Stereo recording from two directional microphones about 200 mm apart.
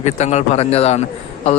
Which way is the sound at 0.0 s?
35° left (ahead or behind).